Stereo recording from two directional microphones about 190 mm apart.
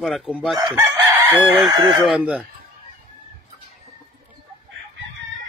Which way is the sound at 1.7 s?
25° right (ahead or behind).